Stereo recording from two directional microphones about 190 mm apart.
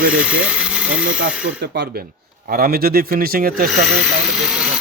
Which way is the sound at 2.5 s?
55° right (ahead or behind).